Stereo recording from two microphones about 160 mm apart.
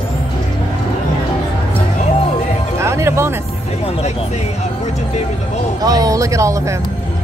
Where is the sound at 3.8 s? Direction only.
40° left (ahead or behind).